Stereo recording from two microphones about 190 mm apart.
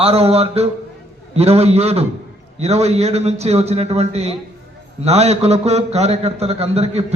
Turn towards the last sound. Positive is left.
turn(degrees=-35)  # may be behind; listen again after turning